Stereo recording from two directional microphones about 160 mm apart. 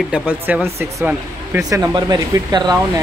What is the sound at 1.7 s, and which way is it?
Speech, 25° right (ahead or behind).